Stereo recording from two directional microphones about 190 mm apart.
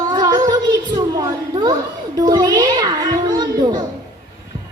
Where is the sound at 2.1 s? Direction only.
20° right (ahead or behind).